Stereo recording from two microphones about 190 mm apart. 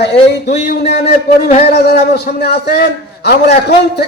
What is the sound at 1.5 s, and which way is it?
Music, 35° left (ahead or behind).